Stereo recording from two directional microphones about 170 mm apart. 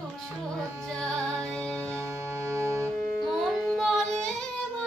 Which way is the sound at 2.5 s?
15° right (ahead or behind).